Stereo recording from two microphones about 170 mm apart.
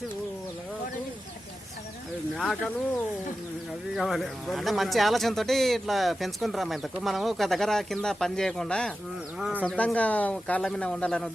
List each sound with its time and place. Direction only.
2.3 s speech: centre (ahead or behind)
3.9 s speech: centre (ahead or behind)
9.4 s speech: 10° right (ahead or behind)
9.6 s speech: 5° left (ahead or behind)